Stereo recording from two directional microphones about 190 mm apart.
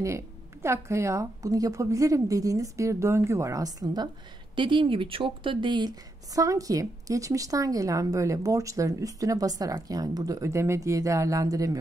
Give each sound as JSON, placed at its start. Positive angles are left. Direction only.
{"t": 0.0, "sound": "a woman's voice", "side_deg": -15}